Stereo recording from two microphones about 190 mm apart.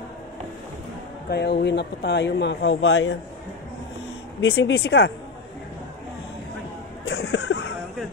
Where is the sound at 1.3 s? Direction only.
60° left (ahead or behind); by 3.2 s 75° left (ahead or behind).